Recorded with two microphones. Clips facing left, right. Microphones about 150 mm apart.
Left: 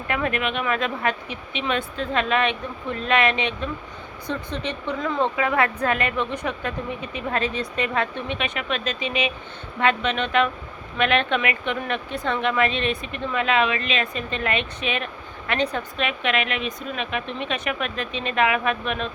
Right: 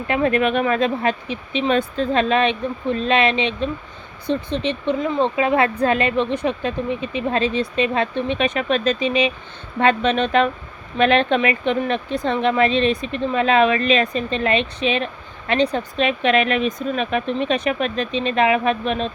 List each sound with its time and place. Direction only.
0.1 s speech: 30° right (ahead or behind)